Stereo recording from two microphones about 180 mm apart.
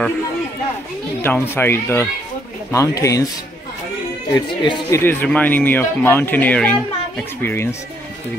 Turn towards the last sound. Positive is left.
turn(degrees=10)  # may be behind; listen again after turning